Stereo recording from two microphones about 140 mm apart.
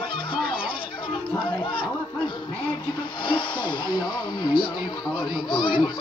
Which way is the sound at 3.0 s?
35° left (ahead or behind).